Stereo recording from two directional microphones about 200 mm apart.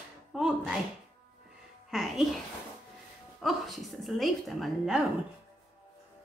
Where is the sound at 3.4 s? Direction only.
Centre (ahead or behind).